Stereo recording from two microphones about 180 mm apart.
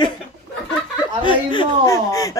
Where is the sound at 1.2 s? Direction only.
25° left (ahead or behind).